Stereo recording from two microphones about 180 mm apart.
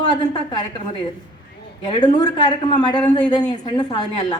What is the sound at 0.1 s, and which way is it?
Speech, 25° left (ahead or behind).